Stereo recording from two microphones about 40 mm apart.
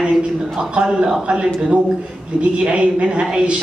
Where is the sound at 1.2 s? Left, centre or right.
Right.